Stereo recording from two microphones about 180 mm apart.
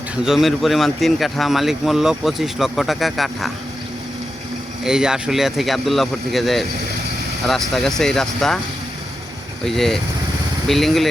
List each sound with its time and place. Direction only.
0.3 s speech: centre (ahead or behind)
4.8 s speech: 5° right (ahead or behind)
9.6 s speech: centre (ahead or behind)